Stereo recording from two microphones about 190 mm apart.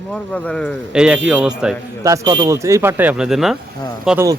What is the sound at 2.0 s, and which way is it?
Speech, 15° right (ahead or behind).